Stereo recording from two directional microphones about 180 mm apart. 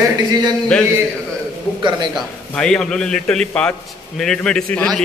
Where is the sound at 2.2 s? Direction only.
5° left (ahead or behind).